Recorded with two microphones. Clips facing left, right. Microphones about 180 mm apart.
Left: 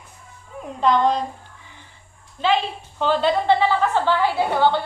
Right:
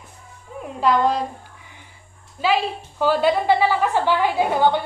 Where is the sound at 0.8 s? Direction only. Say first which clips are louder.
Even; 5° right (ahead or behind).